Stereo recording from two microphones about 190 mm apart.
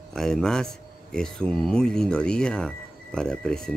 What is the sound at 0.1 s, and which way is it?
Speech, 5° left (ahead or behind).